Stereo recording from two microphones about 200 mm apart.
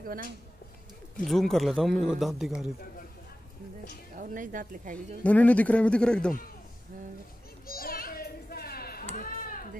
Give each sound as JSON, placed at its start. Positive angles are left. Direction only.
{"t": 0.0, "sound": "speech", "side_deg": -45}
{"t": 1.2, "sound": "speech", "side_deg": 0}
{"t": 4.2, "sound": "a woman's voice", "side_deg": -40}
{"t": 4.9, "sound": "a man's voice", "side_deg": 5}
{"t": 7.6, "sound": "children playing", "side_deg": 45}
{"t": 9.1, "sound": "a sound", "side_deg": 45}